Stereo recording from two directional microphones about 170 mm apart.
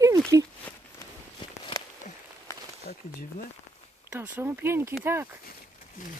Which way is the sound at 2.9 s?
65° left (ahead or behind).